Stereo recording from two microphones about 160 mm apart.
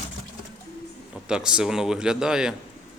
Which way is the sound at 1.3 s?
5° right (ahead or behind).